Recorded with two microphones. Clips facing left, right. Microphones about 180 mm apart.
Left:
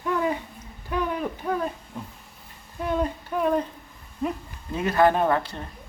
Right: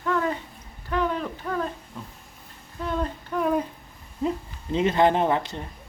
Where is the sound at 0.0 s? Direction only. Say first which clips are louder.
Even; 15° left (ahead or behind).